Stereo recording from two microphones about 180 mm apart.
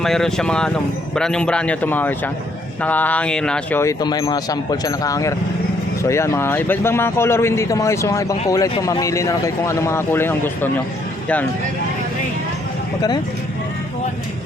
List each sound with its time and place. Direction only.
0.0 s speech: centre (ahead or behind)
4.0 s speech: 25° left (ahead or behind)